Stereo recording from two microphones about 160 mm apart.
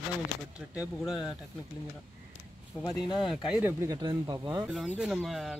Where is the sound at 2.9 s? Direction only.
25° left (ahead or behind).